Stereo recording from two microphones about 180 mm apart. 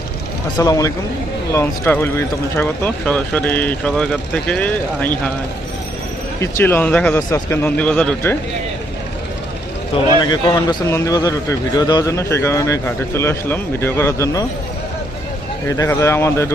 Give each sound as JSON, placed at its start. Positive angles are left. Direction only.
{"t": 0.6, "sound": "speech", "side_deg": 20}
{"t": 6.4, "sound": "speech", "side_deg": 10}
{"t": 10.2, "sound": "speech", "side_deg": 25}
{"t": 15.6, "sound": "speech", "side_deg": 15}